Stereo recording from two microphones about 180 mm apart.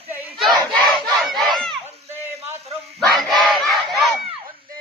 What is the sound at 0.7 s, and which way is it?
Crowd, centre (ahead or behind).